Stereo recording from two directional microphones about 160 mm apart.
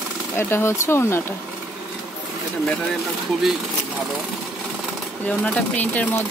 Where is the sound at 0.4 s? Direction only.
15° left (ahead or behind).